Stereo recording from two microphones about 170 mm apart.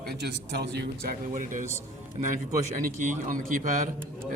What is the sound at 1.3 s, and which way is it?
Speech, 50° right (ahead or behind).